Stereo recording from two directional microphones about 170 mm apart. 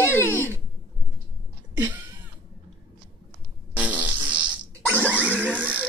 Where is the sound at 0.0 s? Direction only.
15° left (ahead or behind).